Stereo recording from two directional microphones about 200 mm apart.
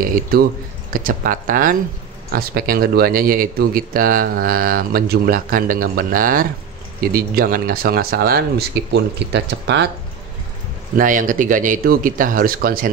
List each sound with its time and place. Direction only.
0.3 s speech: 50° right (ahead or behind)
11.0 s speech: 40° right (ahead or behind)